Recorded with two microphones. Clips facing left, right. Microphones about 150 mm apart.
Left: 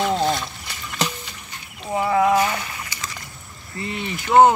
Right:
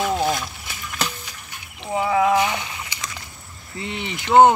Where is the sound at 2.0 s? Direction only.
Centre (ahead or behind).